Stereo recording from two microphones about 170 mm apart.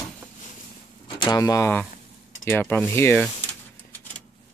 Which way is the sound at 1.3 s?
20° left (ahead or behind).